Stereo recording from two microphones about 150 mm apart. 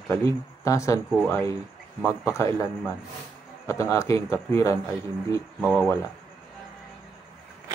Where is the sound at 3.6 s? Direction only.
20° left (ahead or behind).